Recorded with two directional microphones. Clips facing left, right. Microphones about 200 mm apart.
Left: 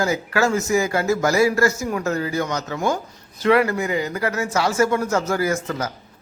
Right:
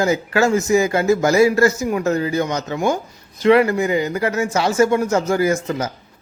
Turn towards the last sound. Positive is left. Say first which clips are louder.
# right 4 dB
turn(degrees=-20)  # may be behind; listen again after turning